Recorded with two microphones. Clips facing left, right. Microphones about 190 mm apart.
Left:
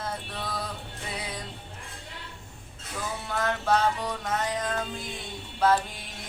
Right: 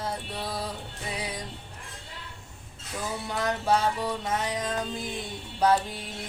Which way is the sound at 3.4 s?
10° right (ahead or behind).